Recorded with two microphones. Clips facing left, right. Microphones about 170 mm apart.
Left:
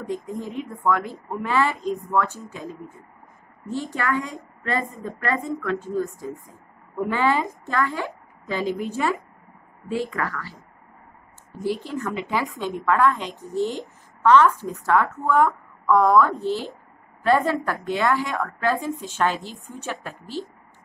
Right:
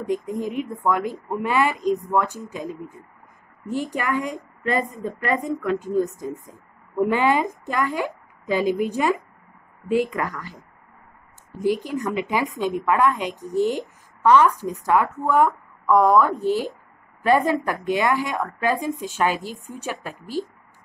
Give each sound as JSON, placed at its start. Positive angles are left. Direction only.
{"t": 0.0, "sound": "speech", "side_deg": -15}
{"t": 11.6, "sound": "speech", "side_deg": -15}